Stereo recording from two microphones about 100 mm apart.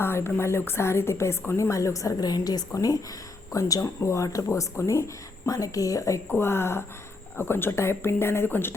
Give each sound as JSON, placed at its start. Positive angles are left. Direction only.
{"t": 0.0, "sound": "a woman's voice", "side_deg": 25}
{"t": 6.2, "sound": "a woman's voice", "side_deg": 20}